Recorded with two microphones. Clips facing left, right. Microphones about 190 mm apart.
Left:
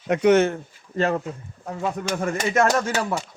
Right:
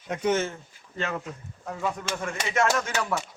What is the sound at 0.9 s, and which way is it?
Music, 40° left (ahead or behind).